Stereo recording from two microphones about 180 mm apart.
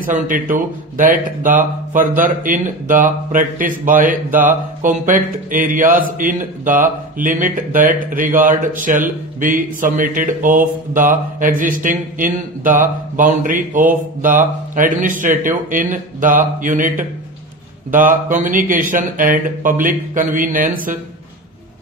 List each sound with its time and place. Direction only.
0.0 s speech: 50° right (ahead or behind)